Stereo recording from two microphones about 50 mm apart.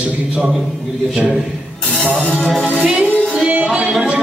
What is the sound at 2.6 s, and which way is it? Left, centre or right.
Music, centre.